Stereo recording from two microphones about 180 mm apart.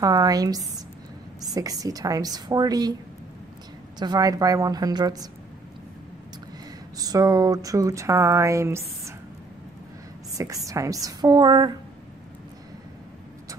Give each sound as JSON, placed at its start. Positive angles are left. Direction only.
{"t": 0.0, "sound": "a woman's voice", "side_deg": -20}
{"t": 4.0, "sound": "a woman's voice", "side_deg": -20}
{"t": 7.0, "sound": "speech", "side_deg": -20}
{"t": 10.3, "sound": "a woman's voice", "side_deg": -20}